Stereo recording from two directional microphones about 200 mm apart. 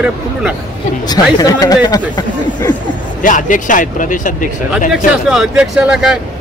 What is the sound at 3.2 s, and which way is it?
Speech, 40° left (ahead or behind).